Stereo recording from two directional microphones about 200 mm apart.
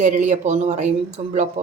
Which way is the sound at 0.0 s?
35° right (ahead or behind).